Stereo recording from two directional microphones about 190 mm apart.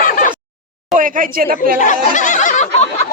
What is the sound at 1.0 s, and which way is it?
Speech, 45° right (ahead or behind).